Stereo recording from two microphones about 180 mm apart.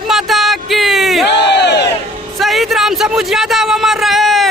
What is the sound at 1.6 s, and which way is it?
Crowd, 70° left (ahead or behind).